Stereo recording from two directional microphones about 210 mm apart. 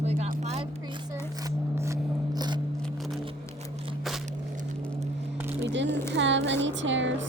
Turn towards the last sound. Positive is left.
turn(degrees=-60)  # may be behind; listen again after turning